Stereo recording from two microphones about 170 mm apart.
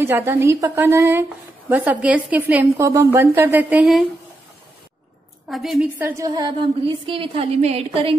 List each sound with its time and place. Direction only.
0.0 s a woman's voice: 15° right (ahead or behind)
5.5 s a woman's voice: centre (ahead or behind)
6.0 s a woman's voice: 20° right (ahead or behind)